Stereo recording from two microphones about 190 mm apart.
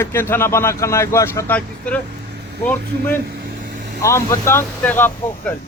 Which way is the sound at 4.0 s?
15° left (ahead or behind).